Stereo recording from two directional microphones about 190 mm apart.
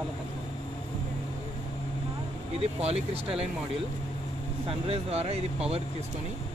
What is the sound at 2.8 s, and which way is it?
Speech, 30° right (ahead or behind).